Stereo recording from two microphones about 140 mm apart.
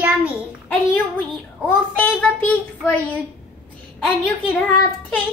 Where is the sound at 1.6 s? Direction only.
10° left (ahead or behind).